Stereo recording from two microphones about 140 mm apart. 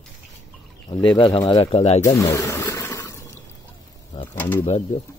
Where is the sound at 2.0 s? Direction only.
25° left (ahead or behind).